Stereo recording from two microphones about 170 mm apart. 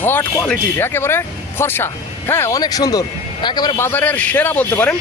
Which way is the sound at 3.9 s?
10° left (ahead or behind).